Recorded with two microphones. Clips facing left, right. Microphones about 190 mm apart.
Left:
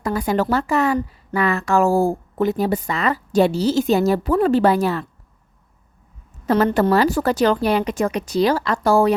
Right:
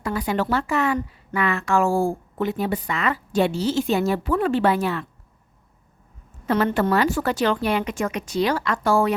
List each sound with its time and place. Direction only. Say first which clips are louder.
0.0 s a woman's voice: left 4 dB; 40° left (ahead or behind)
6.4 s a woman's voice: left 4 dB; 40° left (ahead or behind)